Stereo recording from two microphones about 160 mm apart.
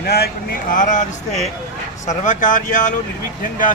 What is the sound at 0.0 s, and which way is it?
Speech, 80° left.